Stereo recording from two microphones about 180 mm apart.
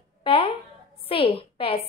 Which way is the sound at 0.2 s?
30° left (ahead or behind).